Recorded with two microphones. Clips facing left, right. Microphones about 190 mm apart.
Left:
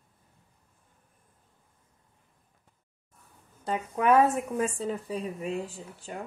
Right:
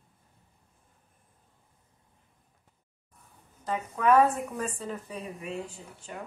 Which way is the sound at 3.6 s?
25° left (ahead or behind).